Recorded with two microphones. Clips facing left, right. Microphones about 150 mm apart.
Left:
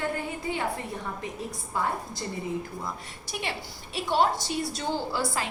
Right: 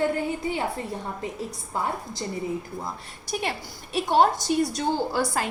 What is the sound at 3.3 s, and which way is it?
A woman's voice, 45° right (ahead or behind).